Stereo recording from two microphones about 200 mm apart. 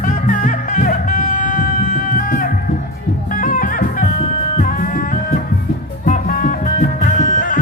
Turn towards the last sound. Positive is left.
turn(degrees=40)  # may be behind; listen again after turning